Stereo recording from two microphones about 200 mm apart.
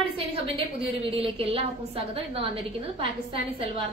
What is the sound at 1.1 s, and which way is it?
A woman's voice, 30° right (ahead or behind).